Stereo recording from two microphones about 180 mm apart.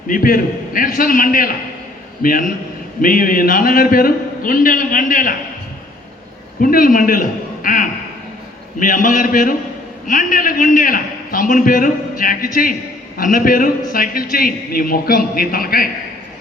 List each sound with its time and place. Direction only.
0.1 s a man's voice: 50° left (ahead or behind)
6.6 s a man's voice: 50° left (ahead or behind)